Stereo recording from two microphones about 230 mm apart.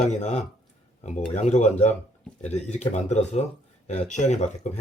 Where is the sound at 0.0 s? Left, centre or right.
Left.